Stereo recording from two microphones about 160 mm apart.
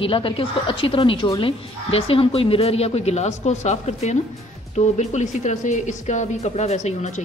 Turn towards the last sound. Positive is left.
turn(degrees=45)  # may be behind; listen again after turning